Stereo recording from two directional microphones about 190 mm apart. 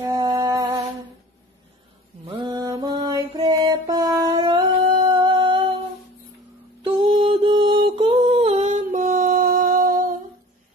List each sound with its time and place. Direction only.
0.0 s a sound: 20° right (ahead or behind)
2.2 s mantra: 25° right (ahead or behind)
6.8 s mantra: 25° right (ahead or behind); by 10.0 s 45° right (ahead or behind)